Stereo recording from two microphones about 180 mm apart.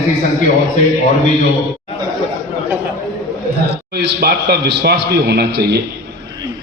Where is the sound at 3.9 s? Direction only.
60° right (ahead or behind).